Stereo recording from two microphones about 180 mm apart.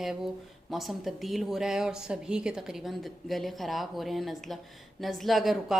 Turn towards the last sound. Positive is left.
turn(degrees=0)  # may be behind; listen again after turning